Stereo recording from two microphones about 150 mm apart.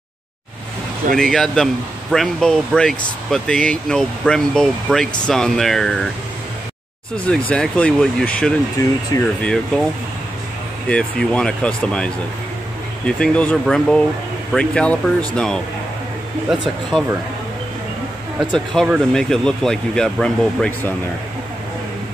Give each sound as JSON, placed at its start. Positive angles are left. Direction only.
{"t": 1.1, "sound": "speech", "side_deg": 5}
{"t": 7.2, "sound": "speech", "side_deg": 10}
{"t": 8.8, "sound": "speech", "side_deg": 20}
{"t": 9.4, "sound": "speech", "side_deg": 5}
{"t": 10.9, "sound": "speech", "side_deg": 5}
{"t": 16.9, "sound": "speech", "side_deg": -5}
{"t": 18.4, "sound": "speech", "side_deg": 0}